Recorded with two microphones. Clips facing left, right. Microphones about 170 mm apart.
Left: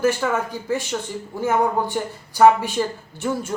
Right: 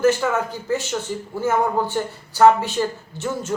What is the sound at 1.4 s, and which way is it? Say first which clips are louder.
Speech: even; 15° left (ahead or behind).